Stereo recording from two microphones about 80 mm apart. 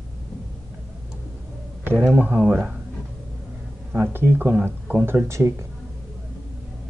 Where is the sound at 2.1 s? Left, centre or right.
Right.